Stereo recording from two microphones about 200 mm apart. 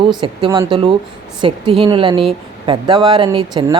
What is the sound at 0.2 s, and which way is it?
Speech, 25° right (ahead or behind).